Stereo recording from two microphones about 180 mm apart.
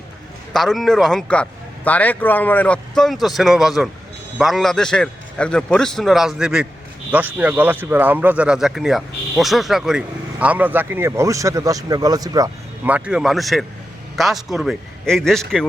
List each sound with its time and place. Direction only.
0.5 s a man's voice: centre (ahead or behind); by 12.5 s 20° right (ahead or behind)
12.8 s a man's voice: 5° right (ahead or behind)